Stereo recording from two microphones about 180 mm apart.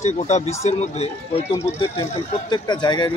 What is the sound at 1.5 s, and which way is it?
Speech, 15° left (ahead or behind).